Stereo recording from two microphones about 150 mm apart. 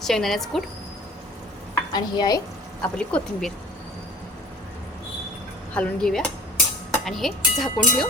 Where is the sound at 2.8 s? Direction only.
5° left (ahead or behind).